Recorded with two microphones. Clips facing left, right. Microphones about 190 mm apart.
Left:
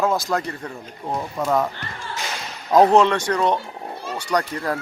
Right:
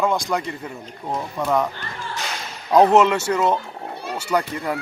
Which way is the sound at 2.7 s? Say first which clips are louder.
Even; centre (ahead or behind).